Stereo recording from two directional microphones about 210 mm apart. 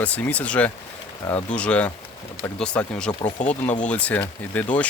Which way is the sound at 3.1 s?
20° left (ahead or behind).